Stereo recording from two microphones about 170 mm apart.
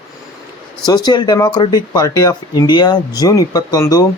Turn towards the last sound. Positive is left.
turn(degrees=20)  # may be behind; listen again after turning